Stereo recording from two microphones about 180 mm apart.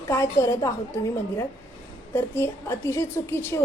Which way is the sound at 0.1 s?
15° left (ahead or behind).